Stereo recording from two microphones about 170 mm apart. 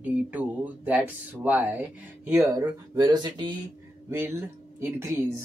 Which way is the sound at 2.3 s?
20° right (ahead or behind).